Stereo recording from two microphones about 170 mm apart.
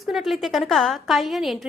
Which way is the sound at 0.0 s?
Centre (ahead or behind).